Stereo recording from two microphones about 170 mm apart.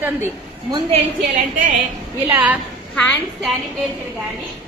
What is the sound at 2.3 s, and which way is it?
Speech, 10° right (ahead or behind).